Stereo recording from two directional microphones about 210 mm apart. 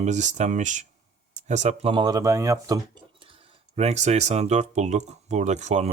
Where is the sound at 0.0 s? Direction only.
35° right (ahead or behind).